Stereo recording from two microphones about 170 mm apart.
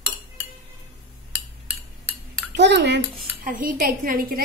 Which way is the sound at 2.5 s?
85° right.